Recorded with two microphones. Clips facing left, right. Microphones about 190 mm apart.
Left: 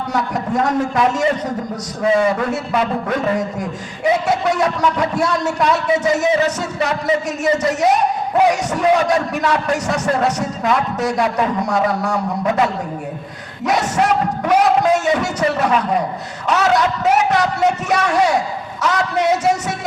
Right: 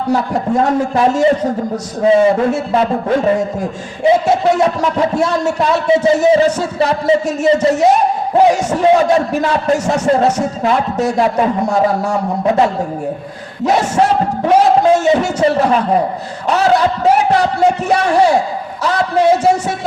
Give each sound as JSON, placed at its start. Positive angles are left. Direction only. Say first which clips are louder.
{"t": 0.1, "sound": "a man's voice", "louder": "right 6 dB", "side_deg": -30}